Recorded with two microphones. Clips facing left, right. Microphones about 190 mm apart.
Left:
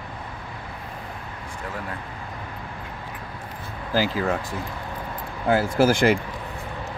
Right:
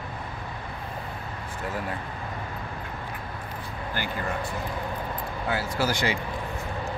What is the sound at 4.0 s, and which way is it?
Speech, 90° left.